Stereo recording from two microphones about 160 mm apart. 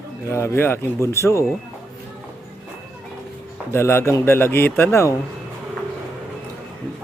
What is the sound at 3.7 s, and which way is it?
A man's voice, 15° left (ahead or behind).